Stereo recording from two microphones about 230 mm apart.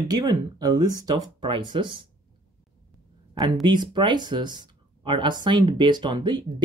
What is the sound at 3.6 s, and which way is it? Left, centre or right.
Speech, centre.